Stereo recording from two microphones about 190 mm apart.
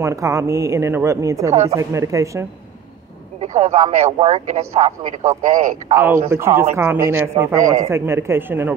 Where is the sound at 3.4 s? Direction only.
35° right (ahead or behind).